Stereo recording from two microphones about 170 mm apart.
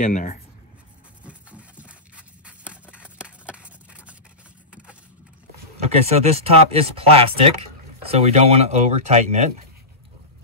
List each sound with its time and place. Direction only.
0.0 s speech: 50° left (ahead or behind)
1.2 s a sound: 10° right (ahead or behind)
6.0 s speech: 35° right (ahead or behind)